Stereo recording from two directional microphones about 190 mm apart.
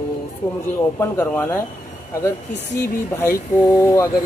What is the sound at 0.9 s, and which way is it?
Speech, 10° left (ahead or behind).